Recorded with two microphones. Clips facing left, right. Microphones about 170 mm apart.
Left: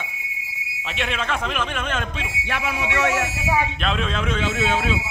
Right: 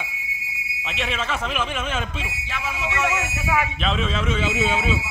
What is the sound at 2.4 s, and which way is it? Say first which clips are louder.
Speech: left 5 dB; 65° left (ahead or behind).